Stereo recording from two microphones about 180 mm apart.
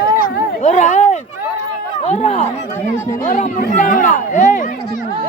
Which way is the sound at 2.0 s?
40° left (ahead or behind).